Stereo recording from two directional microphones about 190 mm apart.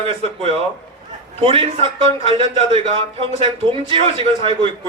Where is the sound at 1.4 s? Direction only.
30° right (ahead or behind).